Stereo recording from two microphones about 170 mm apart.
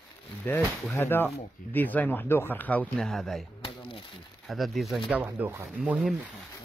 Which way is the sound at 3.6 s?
30° left (ahead or behind).